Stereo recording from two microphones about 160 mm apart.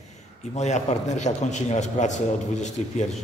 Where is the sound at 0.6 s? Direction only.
45° left (ahead or behind).